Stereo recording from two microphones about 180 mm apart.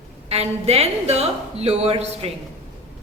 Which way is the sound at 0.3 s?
35° right (ahead or behind).